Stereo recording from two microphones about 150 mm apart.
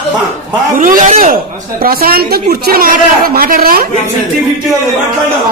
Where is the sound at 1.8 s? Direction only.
85° right.